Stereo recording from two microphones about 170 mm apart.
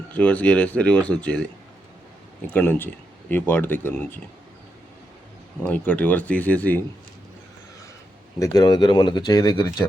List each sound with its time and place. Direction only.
0.1 s speech: 10° left (ahead or behind)
2.5 s speech: 10° left (ahead or behind)
5.6 s speech: 10° left (ahead or behind)
8.4 s speech: 20° left (ahead or behind)